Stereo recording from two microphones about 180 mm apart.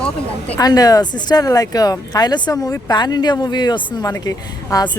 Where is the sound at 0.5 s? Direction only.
20° left (ahead or behind).